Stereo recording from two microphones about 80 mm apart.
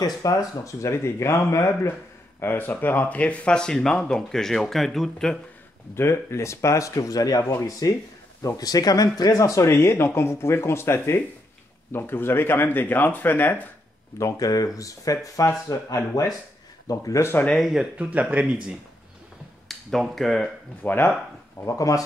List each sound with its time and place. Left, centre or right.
0.0 s speech: left
2.4 s speech: left; by 5.4 s centre
5.9 s speech: left
14.1 s speech: left
17.5 s speech: centre
17.9 s speech: centre
19.7 s speech: centre
20.8 s speech: left
21.5 s speech: left